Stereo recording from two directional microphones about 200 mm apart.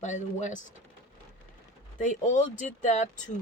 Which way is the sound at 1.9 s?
40° left (ahead or behind).